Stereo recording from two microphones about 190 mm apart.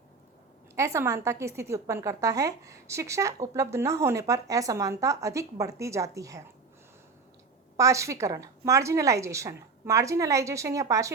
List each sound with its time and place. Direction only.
0.8 s a woman's voice: 15° right (ahead or behind)
7.8 s a woman's voice: 15° right (ahead or behind)